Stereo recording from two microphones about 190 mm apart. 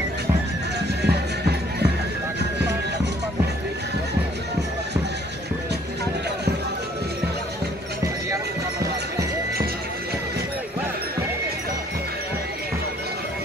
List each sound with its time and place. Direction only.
0.7 s music: 60° right (ahead or behind)